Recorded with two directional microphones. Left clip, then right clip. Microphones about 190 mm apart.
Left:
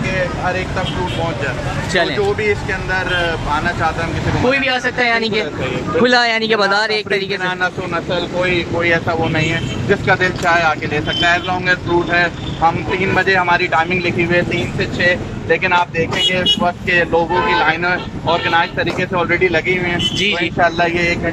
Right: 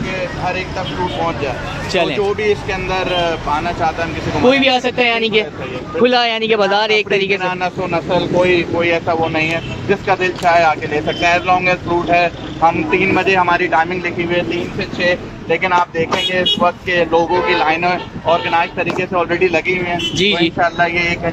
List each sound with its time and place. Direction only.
2.0 s speech: 15° right (ahead or behind)
14.3 s speech: 15° right (ahead or behind)
20.5 s speech: centre (ahead or behind)